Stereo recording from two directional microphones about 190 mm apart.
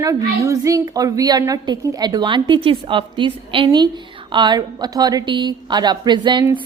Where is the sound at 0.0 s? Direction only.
15° right (ahead or behind).